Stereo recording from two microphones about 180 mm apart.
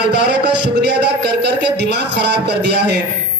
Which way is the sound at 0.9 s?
70° right (ahead or behind).